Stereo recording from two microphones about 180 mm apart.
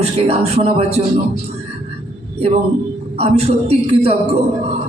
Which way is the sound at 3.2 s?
35° right (ahead or behind).